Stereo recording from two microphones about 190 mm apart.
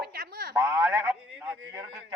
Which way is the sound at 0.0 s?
55° right (ahead or behind).